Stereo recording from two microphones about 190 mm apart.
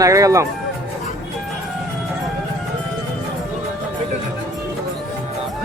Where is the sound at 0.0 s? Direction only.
15° right (ahead or behind).